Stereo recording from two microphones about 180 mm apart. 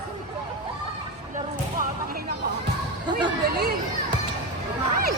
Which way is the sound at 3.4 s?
65° right (ahead or behind).